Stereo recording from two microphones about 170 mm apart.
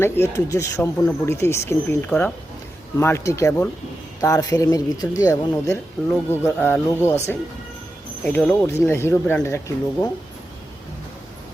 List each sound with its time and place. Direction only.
0.0 s speech: 15° left (ahead or behind)